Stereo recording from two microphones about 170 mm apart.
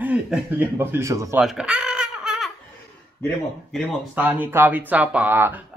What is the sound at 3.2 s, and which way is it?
Speech, centre (ahead or behind).